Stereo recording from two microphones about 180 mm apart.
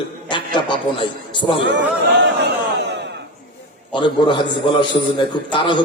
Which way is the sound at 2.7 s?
75° right (ahead or behind).